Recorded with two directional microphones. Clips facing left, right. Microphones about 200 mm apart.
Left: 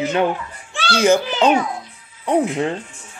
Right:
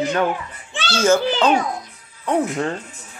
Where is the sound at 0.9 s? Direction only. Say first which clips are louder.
Left 1 dB; 15° left (ahead or behind).